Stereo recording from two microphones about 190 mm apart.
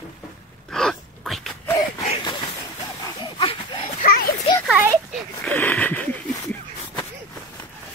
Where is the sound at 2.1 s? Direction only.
25° left (ahead or behind).